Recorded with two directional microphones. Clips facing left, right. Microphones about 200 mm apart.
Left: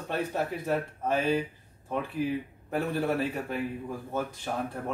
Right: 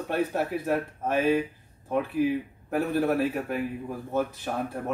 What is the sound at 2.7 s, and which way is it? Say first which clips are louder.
Speech: right 4 dB; 5° right (ahead or behind).